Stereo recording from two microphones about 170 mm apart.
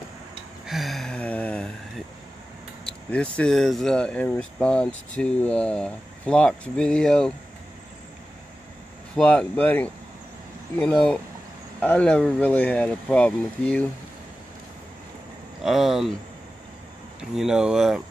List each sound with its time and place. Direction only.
0.7 s gasp: centre (ahead or behind)
2.8 s speech: 5° left (ahead or behind)
9.1 s speech: 5° left (ahead or behind)
15.6 s speech: centre (ahead or behind)
17.2 s speech: 5° right (ahead or behind)